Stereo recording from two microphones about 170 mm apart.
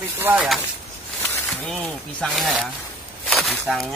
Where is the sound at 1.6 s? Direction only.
5° left (ahead or behind).